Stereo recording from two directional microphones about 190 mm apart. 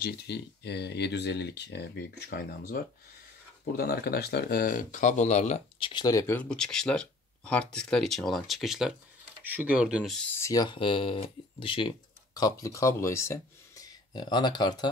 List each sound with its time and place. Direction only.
0.0 s speech: 60° left (ahead or behind); by 14.9 s 20° left (ahead or behind)